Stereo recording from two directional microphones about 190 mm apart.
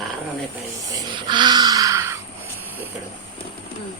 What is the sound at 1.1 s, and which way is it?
Wail, 25° right (ahead or behind).